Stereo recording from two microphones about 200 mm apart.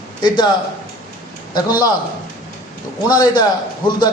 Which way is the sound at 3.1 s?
20° left (ahead or behind).